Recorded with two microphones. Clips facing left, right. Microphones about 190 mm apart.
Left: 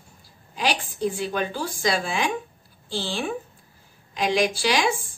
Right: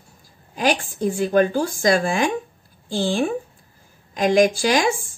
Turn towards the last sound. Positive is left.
turn(degrees=-45)  # may be behind; listen again after turning